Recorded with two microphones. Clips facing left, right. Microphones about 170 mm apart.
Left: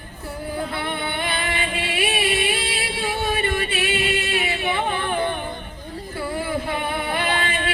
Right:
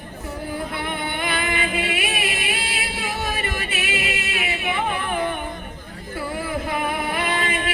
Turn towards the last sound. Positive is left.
turn(degrees=30)  # may be behind; listen again after turning